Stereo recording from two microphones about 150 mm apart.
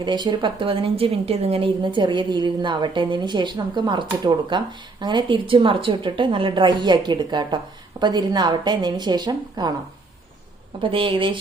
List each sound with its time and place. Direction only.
0.0 s a woman's voice: 30° right (ahead or behind)
10.8 s a woman's voice: 35° right (ahead or behind)